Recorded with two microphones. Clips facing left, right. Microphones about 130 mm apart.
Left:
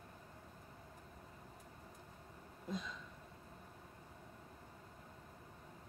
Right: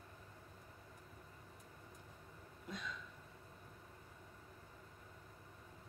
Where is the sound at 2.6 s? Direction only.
30° left (ahead or behind).